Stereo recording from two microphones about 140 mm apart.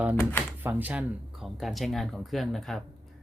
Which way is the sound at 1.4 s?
Centre (ahead or behind).